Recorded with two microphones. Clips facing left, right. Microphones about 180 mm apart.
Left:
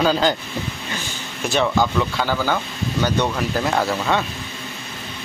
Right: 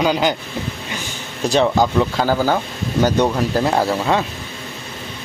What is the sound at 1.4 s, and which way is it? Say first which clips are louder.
Speech: right 4 dB; 35° right (ahead or behind).